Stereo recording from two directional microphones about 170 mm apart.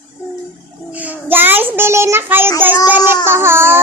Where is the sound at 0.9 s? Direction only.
10° right (ahead or behind).